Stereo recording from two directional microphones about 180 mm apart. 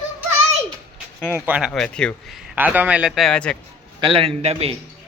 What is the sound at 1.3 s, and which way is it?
Speech, 10° right (ahead or behind).